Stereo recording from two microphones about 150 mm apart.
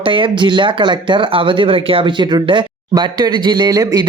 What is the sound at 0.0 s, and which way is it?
Speech, 35° right (ahead or behind).